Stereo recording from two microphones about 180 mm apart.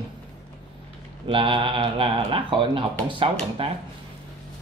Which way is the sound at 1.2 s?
30° right (ahead or behind).